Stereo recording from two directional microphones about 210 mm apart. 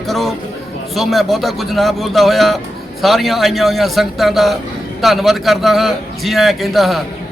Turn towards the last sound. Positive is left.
turn(degrees=0)  # may be behind; listen again after turning